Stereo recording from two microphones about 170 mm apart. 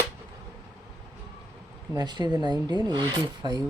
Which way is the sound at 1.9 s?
25° right (ahead or behind).